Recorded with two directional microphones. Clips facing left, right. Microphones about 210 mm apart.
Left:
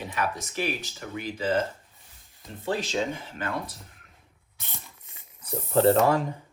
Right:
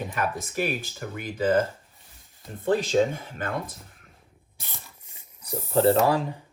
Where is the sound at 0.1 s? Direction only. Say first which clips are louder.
Right 1 dB; 50° right (ahead or behind).